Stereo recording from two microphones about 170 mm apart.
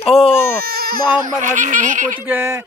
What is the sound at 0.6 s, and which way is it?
Speech, 60° right (ahead or behind).